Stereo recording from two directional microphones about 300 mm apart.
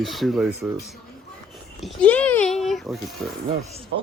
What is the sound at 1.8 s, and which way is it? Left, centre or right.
A child's voice, centre.